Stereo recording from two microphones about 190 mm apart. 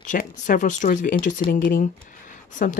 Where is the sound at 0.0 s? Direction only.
45° left (ahead or behind).